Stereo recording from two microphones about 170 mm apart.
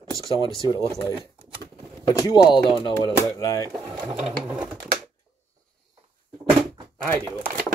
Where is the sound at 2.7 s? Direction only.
30° left (ahead or behind).